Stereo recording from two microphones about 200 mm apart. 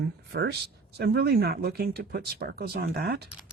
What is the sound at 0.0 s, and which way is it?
Speech, 55° right (ahead or behind).